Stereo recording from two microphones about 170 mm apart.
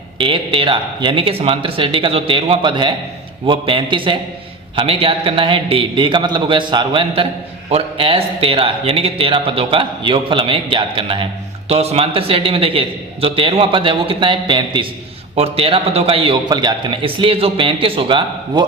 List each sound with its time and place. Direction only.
0.2 s a man's voice: 30° right (ahead or behind)